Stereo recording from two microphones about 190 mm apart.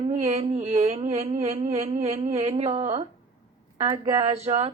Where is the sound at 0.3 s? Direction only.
35° right (ahead or behind).